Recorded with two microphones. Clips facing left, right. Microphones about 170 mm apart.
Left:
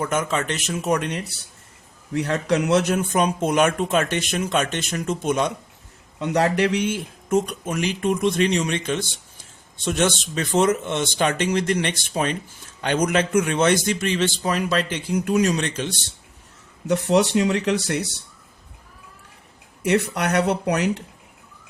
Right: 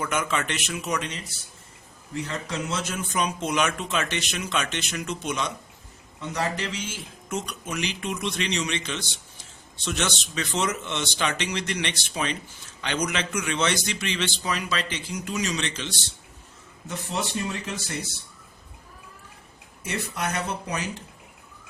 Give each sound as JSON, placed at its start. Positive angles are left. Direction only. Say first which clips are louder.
{"t": 0.0, "sound": "speech", "louder": "left 4 dB", "side_deg": 40}
{"t": 2.1, "sound": "speech", "louder": "left 9 dB", "side_deg": 70}
{"t": 6.1, "sound": "speech", "louder": "left 9 dB", "side_deg": 70}
{"t": 16.8, "sound": "speech", "louder": "left 12 dB", "side_deg": 70}
{"t": 19.8, "sound": "speech", "louder": "left 9 dB", "side_deg": 70}